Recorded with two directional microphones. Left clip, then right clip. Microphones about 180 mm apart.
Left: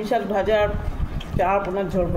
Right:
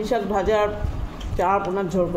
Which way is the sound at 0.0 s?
15° right (ahead or behind).